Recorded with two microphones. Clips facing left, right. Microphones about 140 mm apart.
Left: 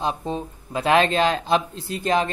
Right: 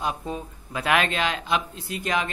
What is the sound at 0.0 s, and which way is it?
Speech, 30° left (ahead or behind).